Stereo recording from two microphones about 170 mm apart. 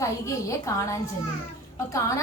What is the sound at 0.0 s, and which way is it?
A woman's voice, 20° left (ahead or behind).